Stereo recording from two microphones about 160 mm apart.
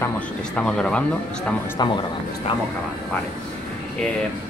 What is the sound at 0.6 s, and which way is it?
Speech, 5° left (ahead or behind).